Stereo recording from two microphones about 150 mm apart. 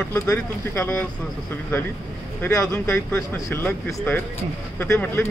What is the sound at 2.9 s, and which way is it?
Speech, 15° left (ahead or behind).